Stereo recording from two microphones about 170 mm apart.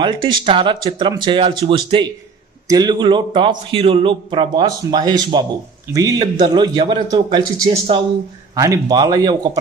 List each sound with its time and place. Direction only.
0.0 s a man's voice: 30° right (ahead or behind)